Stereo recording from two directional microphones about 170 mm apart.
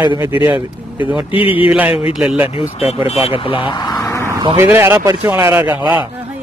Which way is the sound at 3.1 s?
35° left (ahead or behind).